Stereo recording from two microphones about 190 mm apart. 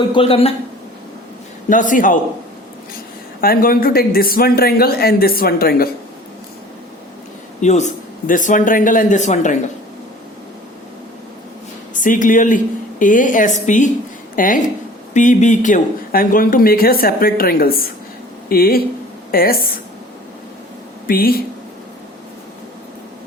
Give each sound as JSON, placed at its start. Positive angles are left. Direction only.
{"t": 0.1, "sound": "speech", "side_deg": 30}
{"t": 1.7, "sound": "speech", "side_deg": 45}
{"t": 3.4, "sound": "speech", "side_deg": 50}
{"t": 7.6, "sound": "speech", "side_deg": 40}
{"t": 11.9, "sound": "speech", "side_deg": 45}
{"t": 21.1, "sound": "speech", "side_deg": 50}